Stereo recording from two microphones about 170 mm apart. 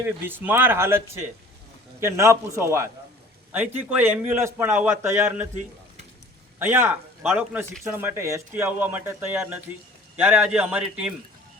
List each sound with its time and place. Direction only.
0.0 s a man's voice: 10° right (ahead or behind)
6.6 s a man's voice: 10° right (ahead or behind)